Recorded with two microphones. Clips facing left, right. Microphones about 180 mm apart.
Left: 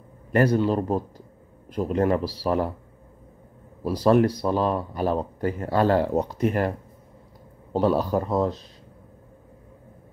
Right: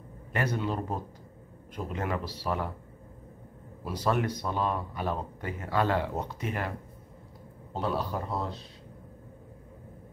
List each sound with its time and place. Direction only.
0.3 s a man's voice: 40° left (ahead or behind)
3.8 s a man's voice: 35° left (ahead or behind)
7.8 s a man's voice: 40° left (ahead or behind)